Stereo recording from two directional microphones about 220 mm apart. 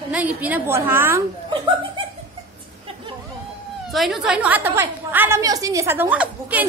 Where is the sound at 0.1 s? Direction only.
5° right (ahead or behind).